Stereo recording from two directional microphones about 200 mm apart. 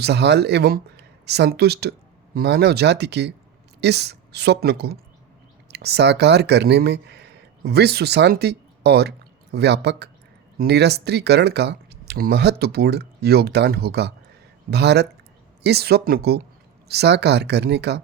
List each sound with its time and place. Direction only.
0.0 s a woman's voice: 55° right (ahead or behind)